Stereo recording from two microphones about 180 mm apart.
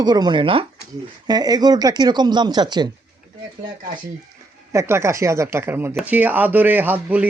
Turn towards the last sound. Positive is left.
turn(degrees=-10)  # may be behind; listen again after turning